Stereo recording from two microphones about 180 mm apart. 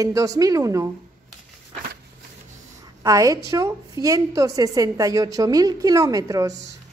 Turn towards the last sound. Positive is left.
turn(degrees=-20)  # may be behind; listen again after turning